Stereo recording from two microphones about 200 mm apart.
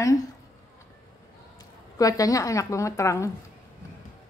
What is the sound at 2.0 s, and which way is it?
A woman's voice, 15° left (ahead or behind).